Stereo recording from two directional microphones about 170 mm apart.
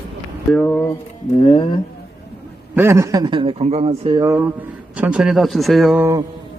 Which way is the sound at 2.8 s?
15° right (ahead or behind).